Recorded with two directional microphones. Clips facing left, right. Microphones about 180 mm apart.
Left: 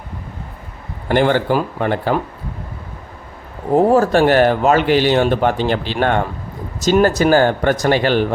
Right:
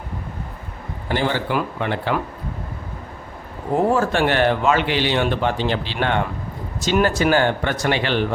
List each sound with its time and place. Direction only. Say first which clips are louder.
1.0 s speech: left 7 dB; 55° left (ahead or behind)
1.5 s speech: left 5 dB; 40° left (ahead or behind)
3.8 s speech: left 6 dB; 40° left (ahead or behind)